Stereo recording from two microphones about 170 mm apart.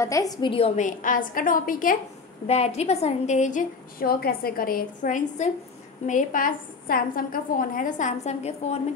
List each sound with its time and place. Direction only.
0.0 s a woman's voice: 20° left (ahead or behind); by 0.8 s 35° left (ahead or behind)
0.8 s a woman's voice: 50° left (ahead or behind)
2.4 s a woman's voice: 40° left (ahead or behind)